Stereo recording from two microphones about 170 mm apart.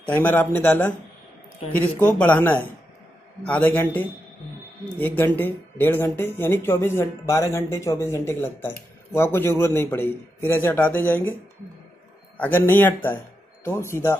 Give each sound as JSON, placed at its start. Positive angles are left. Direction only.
{"t": 0.0, "sound": "speech", "side_deg": 10}
{"t": 12.4, "sound": "speech", "side_deg": 10}